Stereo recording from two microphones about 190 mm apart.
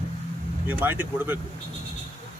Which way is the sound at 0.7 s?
10° right (ahead or behind).